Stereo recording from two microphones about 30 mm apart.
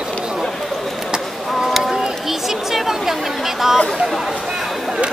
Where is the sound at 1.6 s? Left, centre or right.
Centre.